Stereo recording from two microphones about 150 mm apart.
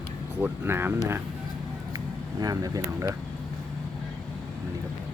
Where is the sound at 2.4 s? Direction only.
25° right (ahead or behind).